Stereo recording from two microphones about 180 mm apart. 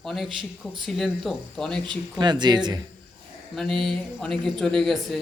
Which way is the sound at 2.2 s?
25° right (ahead or behind).